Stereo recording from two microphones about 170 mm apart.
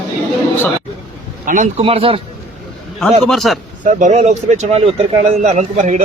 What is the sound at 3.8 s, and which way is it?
Speech, 50° right (ahead or behind).